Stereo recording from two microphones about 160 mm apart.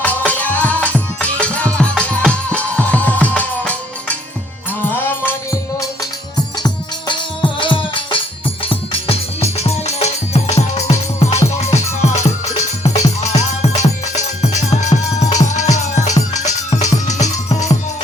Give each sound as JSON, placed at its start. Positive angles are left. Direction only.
{"t": 0.0, "sound": "music", "side_deg": 10}
{"t": 7.1, "sound": "music", "side_deg": 30}